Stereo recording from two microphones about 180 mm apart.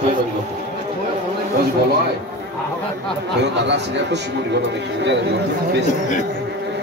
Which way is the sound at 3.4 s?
75° right (ahead or behind).